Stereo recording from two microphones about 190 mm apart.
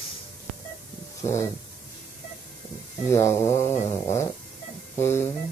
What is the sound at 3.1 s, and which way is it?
Speech, 15° left (ahead or behind).